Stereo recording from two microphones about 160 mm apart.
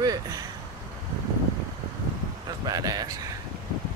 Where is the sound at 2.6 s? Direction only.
25° right (ahead or behind).